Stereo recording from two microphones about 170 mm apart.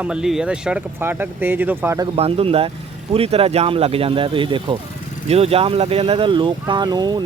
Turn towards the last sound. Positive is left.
turn(degrees=-25)  # may be behind; listen again after turning